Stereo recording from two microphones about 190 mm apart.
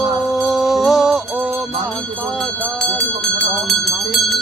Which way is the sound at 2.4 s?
5° left (ahead or behind).